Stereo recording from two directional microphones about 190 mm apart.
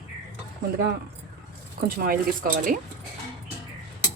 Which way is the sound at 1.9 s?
50° right (ahead or behind).